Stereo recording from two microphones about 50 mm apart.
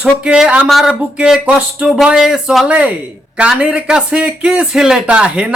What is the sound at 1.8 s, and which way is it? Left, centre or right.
Speech, centre.